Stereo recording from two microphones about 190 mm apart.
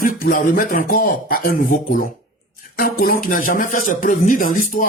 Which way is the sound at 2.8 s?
50° left (ahead or behind).